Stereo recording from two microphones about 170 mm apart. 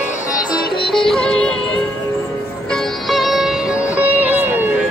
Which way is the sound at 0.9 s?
5° left (ahead or behind).